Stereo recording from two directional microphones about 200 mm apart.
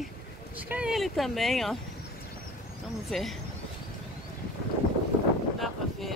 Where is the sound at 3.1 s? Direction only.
Centre (ahead or behind).